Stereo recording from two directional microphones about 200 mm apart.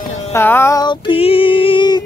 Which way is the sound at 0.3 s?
10° left (ahead or behind).